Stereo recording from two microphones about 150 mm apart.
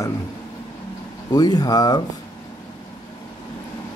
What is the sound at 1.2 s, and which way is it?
Speech, 25° left (ahead or behind).